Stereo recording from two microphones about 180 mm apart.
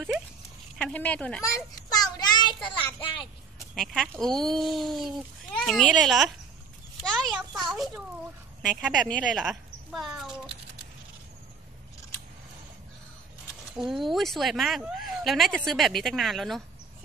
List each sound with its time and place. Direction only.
0.7 s a sound: 5° left (ahead or behind); by 2.7 s 25° left (ahead or behind)
3.0 s a child's voice: 30° left (ahead or behind)
3.7 s speech: centre (ahead or behind)
13.7 s speech: centre (ahead or behind)